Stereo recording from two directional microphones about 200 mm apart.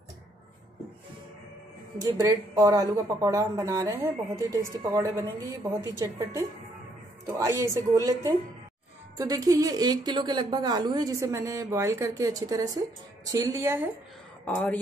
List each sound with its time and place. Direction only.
2.0 s a woman's voice: 20° right (ahead or behind)
14.4 s speech: 5° left (ahead or behind)